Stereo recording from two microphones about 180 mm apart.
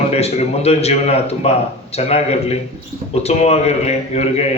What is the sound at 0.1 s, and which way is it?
A man's voice, 35° left (ahead or behind).